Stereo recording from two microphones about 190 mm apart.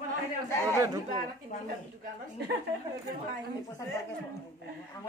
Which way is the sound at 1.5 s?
45° left (ahead or behind).